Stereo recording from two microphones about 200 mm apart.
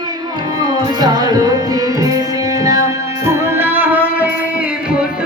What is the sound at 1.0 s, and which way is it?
Music, 20° right (ahead or behind).